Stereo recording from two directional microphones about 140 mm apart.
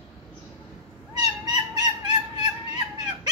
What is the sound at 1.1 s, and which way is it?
Cat, 30° right (ahead or behind).